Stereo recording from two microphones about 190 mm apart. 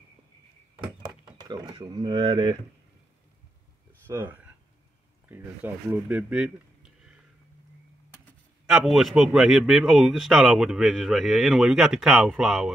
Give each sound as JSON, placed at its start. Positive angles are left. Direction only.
{"t": 1.4, "sound": "speech", "side_deg": -25}
{"t": 4.1, "sound": "speech", "side_deg": -10}
{"t": 8.6, "sound": "a man's voice", "side_deg": 0}